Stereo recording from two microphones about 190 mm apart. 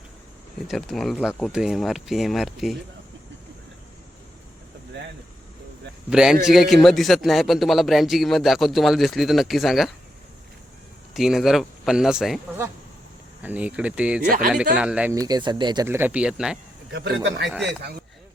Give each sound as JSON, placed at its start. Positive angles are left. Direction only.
{"t": 0.7, "sound": "a man's voice", "side_deg": 0}
{"t": 6.1, "sound": "a man's voice", "side_deg": -5}
{"t": 11.1, "sound": "a man's voice", "side_deg": 0}
{"t": 13.4, "sound": "speech", "side_deg": -10}
{"t": 14.3, "sound": "speech", "side_deg": -45}
{"t": 14.8, "sound": "speech", "side_deg": -5}
{"t": 15.1, "sound": "speech", "side_deg": -20}
{"t": 16.9, "sound": "a man's voice", "side_deg": -65}